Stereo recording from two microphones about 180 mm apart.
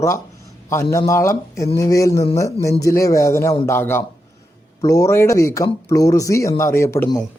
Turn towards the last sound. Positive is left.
turn(degrees=15)  # may be behind; listen again after turning